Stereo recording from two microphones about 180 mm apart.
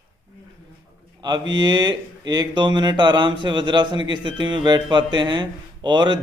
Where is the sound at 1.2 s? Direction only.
25° right (ahead or behind).